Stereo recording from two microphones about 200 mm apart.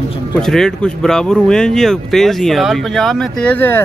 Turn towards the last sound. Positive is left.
turn(degrees=10)  # may be behind; listen again after turning